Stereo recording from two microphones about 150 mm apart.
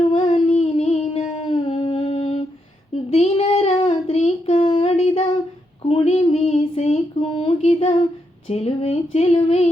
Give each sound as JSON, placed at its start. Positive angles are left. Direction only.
{"t": 0.1, "sound": "humming", "side_deg": 45}
{"t": 2.9, "sound": "child singing", "side_deg": 40}
{"t": 5.8, "sound": "female singing", "side_deg": 40}
{"t": 8.4, "sound": "a sound", "side_deg": 45}